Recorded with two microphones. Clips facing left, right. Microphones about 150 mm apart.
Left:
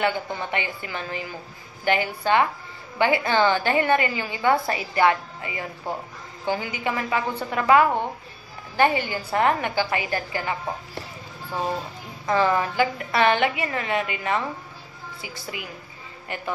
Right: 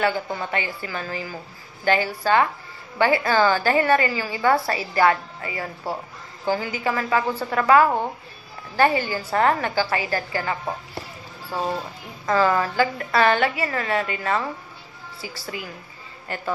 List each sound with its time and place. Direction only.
0.0 s a woman's voice: 20° left (ahead or behind)
12.3 s a woman's voice: 20° left (ahead or behind)